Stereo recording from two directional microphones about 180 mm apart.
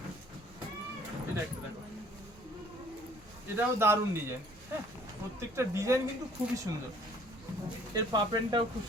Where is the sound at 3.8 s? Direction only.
15° right (ahead or behind).